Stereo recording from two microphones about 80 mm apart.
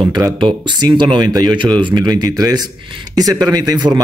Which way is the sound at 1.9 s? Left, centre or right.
Right.